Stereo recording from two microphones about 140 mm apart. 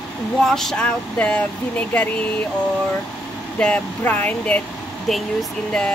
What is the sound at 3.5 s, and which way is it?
Speech, 10° left (ahead or behind).